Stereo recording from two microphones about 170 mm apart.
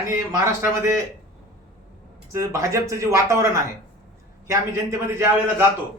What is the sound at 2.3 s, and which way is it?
Speech, 15° right (ahead or behind).